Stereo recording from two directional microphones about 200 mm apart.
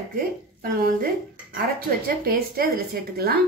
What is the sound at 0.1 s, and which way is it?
Speech, 45° right (ahead or behind).